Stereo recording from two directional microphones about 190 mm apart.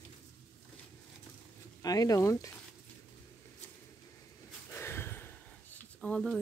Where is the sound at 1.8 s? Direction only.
20° left (ahead or behind).